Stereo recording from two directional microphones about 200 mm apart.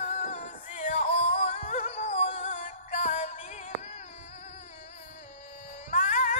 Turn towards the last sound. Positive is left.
turn(degrees=40)  # may be behind; listen again after turning